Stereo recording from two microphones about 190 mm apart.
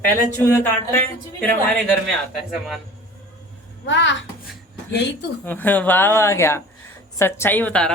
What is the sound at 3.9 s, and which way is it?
A woman's voice, 70° left (ahead or behind).